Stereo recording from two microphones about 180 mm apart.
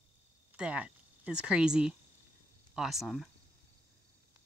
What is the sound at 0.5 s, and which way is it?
Speech, 5° right (ahead or behind).